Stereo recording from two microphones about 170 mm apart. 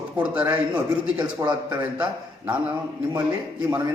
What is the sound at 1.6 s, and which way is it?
Speech, 10° right (ahead or behind).